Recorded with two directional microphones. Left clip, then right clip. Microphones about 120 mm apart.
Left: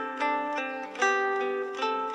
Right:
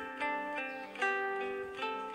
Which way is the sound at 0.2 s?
35° left (ahead or behind).